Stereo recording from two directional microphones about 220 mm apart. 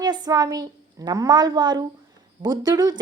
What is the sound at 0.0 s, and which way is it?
A woman's voice, 20° right (ahead or behind).